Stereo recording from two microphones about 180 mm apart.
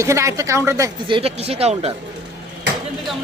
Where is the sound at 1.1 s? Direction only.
35° right (ahead or behind).